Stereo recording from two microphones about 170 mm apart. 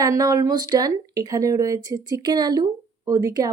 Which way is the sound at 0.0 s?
20° right (ahead or behind).